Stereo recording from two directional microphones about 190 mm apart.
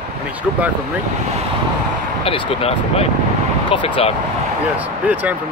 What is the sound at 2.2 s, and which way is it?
Speech, 30° left (ahead or behind).